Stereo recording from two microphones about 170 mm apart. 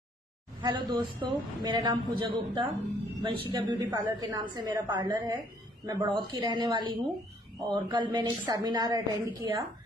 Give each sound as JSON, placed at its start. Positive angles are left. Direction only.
{"t": 0.6, "sound": "a woman's voice", "side_deg": -25}